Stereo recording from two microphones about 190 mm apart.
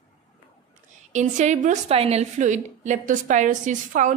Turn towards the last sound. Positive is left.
turn(degrees=-40)  # may be behind; listen again after turning